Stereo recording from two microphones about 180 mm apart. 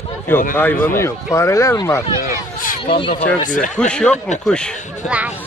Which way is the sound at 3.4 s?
45° left (ahead or behind).